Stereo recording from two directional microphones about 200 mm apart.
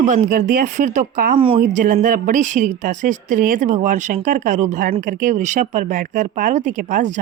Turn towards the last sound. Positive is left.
turn(degrees=-40)  # may be behind; listen again after turning